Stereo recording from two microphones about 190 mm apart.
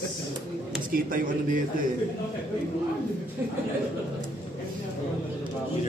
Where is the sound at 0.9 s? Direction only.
45° right (ahead or behind).